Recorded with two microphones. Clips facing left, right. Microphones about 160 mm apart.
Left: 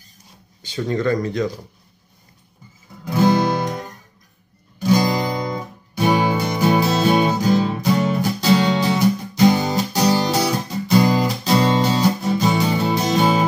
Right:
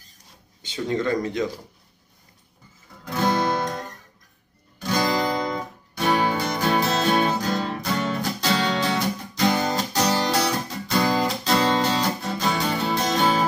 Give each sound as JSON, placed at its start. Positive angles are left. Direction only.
{"t": 0.6, "sound": "speech", "side_deg": -20}
{"t": 3.1, "sound": "music", "side_deg": 10}